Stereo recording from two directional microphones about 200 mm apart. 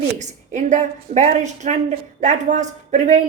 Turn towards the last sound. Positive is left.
turn(degrees=-35)  # may be behind; listen again after turning